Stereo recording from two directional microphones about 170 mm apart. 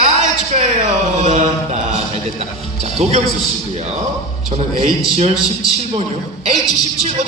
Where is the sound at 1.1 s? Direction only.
45° right (ahead or behind).